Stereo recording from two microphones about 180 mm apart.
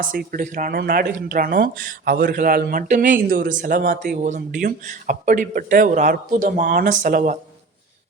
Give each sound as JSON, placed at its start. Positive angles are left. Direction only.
{"t": 0.0, "sound": "speech", "side_deg": -50}